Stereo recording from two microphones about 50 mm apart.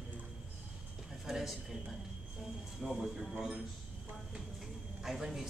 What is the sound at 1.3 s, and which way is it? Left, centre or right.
Speech, centre.